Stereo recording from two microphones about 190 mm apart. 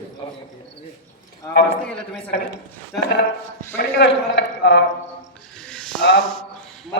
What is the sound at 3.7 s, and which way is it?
A man's voice, 65° left (ahead or behind).